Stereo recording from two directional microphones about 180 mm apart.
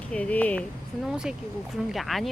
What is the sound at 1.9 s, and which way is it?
Speech, centre (ahead or behind).